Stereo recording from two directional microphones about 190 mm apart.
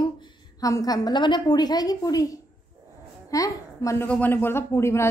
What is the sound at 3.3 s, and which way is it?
A woman's voice, 15° left (ahead or behind).